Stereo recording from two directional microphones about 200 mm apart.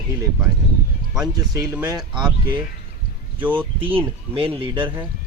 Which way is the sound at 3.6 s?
25° right (ahead or behind).